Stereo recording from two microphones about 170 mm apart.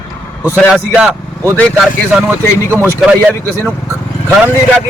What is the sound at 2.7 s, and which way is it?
Speech, 15° right (ahead or behind).